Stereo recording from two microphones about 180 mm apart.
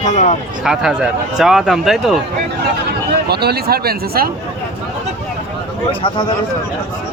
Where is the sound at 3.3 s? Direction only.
65° right (ahead or behind).